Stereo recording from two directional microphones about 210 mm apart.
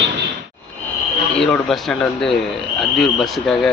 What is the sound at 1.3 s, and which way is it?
Speech, 5° left (ahead or behind).